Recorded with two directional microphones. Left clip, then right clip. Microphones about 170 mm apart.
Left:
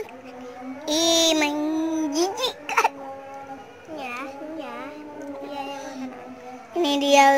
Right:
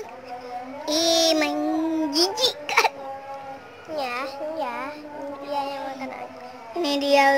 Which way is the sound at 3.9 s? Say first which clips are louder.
Right 5 dB; 70° right (ahead or behind).